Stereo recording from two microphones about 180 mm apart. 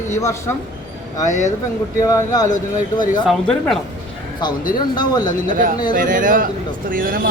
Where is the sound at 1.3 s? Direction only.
45° left (ahead or behind).